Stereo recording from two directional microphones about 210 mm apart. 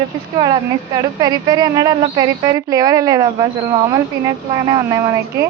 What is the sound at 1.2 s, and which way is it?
Speech, 20° right (ahead or behind).